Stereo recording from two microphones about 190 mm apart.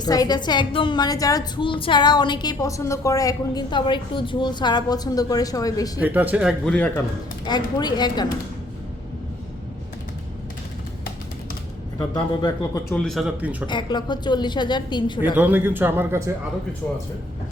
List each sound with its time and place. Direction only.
0.0 s a woman's voice: 20° left (ahead or behind)
6.0 s a man's voice: 10° right (ahead or behind)
6.7 s speech: 5° left (ahead or behind)
7.4 s a woman's voice: 20° left (ahead or behind)
12.1 s a woman's voice: 25° left (ahead or behind)
12.9 s speech: centre (ahead or behind)
13.7 s a woman's voice: 25° left (ahead or behind)
15.4 s a man's voice: 10° right (ahead or behind)